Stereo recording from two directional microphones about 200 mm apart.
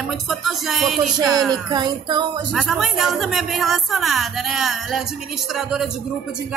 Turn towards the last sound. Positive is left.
turn(degrees=0)  # may be behind; listen again after turning